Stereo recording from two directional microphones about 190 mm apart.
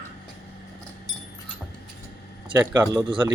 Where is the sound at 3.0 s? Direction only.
25° right (ahead or behind).